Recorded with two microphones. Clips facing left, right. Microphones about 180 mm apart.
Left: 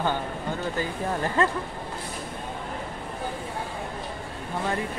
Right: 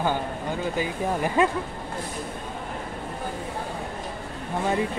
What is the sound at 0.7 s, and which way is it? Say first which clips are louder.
Speech: right 2 dB; 15° right (ahead or behind).